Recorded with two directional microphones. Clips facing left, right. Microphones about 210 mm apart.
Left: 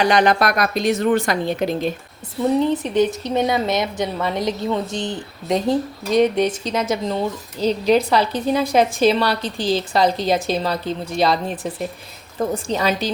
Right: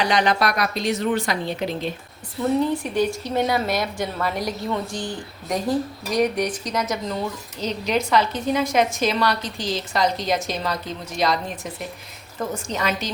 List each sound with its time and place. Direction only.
0.0 s speech: 50° left (ahead or behind)
2.6 s a woman's voice: 20° left (ahead or behind)